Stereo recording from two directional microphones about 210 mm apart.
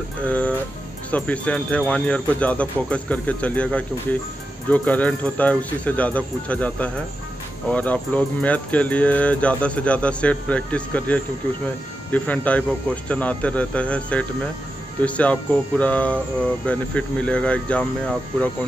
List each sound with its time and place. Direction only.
1.1 s speech: 5° left (ahead or behind)